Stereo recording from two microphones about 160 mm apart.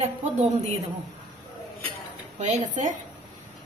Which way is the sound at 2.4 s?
45° right (ahead or behind).